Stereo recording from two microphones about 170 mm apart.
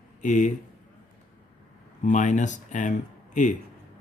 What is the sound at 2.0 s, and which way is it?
Speech, 45° left (ahead or behind).